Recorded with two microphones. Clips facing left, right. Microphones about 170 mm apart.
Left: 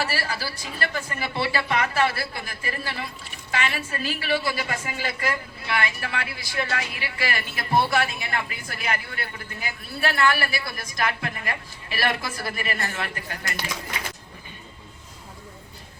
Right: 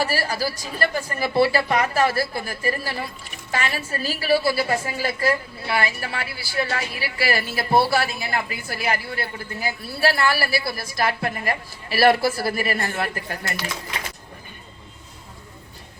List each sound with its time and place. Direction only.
0.0 s a woman's voice: 40° right (ahead or behind)